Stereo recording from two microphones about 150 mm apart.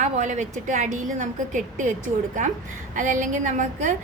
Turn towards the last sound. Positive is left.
turn(degrees=-60)  # may be behind; listen again after turning